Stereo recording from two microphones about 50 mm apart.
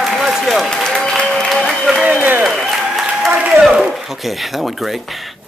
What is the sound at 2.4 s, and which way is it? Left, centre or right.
Applause, centre.